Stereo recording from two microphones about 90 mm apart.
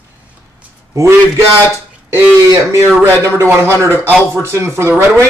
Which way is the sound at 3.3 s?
30° right (ahead or behind).